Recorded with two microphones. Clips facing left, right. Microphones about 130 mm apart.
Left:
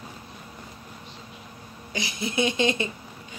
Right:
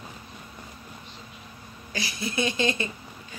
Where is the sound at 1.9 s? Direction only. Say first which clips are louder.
Left 1 dB; 20° left (ahead or behind).